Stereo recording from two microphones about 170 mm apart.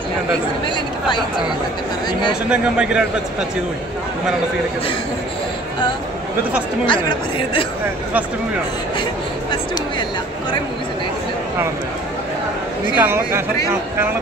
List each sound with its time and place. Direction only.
2.5 s a man's voice: 5° right (ahead or behind)
6.9 s speech: 30° left (ahead or behind)
12.9 s speech: 15° right (ahead or behind)